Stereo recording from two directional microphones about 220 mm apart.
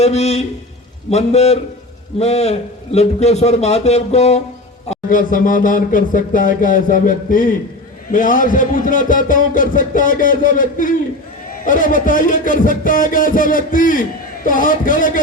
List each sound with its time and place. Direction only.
0.0 s a man's voice: 30° left (ahead or behind)